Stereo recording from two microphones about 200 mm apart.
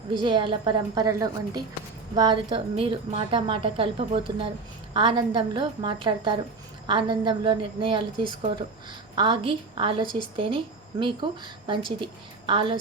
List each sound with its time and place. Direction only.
0.1 s a woman's voice: 25° right (ahead or behind)